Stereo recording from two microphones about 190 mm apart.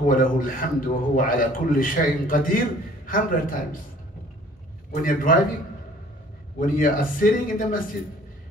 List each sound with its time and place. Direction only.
0.1 s a man's voice: 45° left (ahead or behind)
5.0 s a man's voice: 45° left (ahead or behind)
6.6 s a man's voice: 45° left (ahead or behind)